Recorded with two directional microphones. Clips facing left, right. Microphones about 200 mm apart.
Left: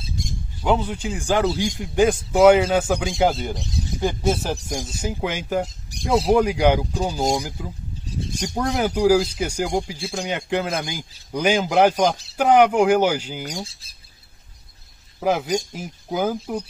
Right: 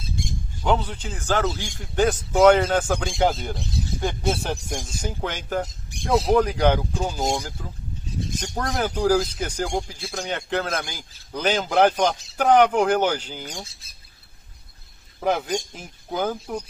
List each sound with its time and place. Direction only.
0.2 s bird: 40° left (ahead or behind)
0.7 s a man's voice: 10° left (ahead or behind)
5.9 s speech: 40° left (ahead or behind)
6.3 s a man's voice: 10° left (ahead or behind)
13.7 s speech: 30° left (ahead or behind)
15.1 s a man's voice: 5° left (ahead or behind)